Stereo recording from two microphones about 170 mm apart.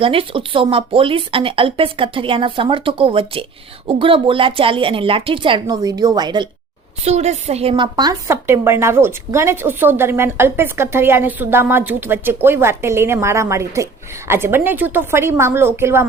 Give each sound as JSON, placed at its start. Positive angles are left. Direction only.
{"t": 0.0, "sound": "speech", "side_deg": -30}
{"t": 7.0, "sound": "a woman's voice", "side_deg": -40}